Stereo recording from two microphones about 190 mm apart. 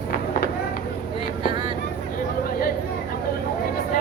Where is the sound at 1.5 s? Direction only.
25° right (ahead or behind).